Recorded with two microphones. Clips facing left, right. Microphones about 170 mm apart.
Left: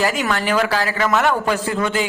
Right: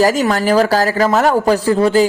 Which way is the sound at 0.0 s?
40° right (ahead or behind).